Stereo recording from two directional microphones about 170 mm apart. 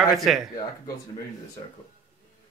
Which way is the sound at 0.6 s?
20° left (ahead or behind).